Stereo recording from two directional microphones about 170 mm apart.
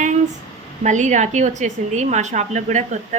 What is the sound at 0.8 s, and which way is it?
A woman's voice, 45° right (ahead or behind).